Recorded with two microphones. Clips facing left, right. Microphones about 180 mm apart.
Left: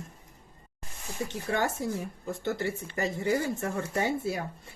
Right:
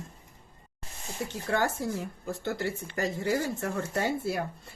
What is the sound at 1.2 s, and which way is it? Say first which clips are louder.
Speech: right 1 dB; 20° left (ahead or behind).